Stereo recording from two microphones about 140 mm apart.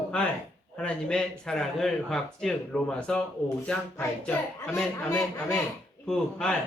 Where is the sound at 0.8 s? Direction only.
5° left (ahead or behind).